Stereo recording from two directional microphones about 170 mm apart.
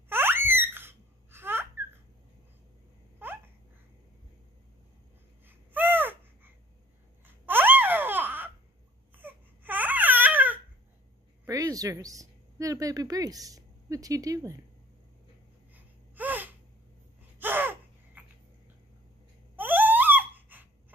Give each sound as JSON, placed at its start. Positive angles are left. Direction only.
{"t": 0.1, "sound": "a sound", "side_deg": -15}
{"t": 5.5, "sound": "gasp", "side_deg": -10}
{"t": 7.2, "sound": "babbling", "side_deg": -10}
{"t": 9.1, "sound": "baby cry", "side_deg": -10}
{"t": 11.4, "sound": "a woman's voice", "side_deg": -20}
{"t": 15.7, "sound": "gasp", "side_deg": -10}
{"t": 19.5, "sound": "a sound", "side_deg": -10}